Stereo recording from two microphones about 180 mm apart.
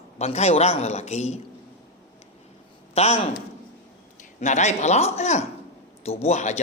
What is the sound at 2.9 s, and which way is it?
Speech, 35° left (ahead or behind).